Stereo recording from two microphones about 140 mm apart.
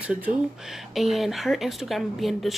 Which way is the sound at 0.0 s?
10° right (ahead or behind).